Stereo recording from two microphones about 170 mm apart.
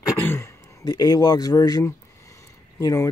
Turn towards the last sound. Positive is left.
turn(degrees=20)  # may be behind; listen again after turning